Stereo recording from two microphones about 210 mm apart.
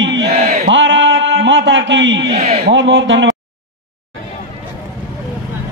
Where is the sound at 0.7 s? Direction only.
60° right (ahead or behind).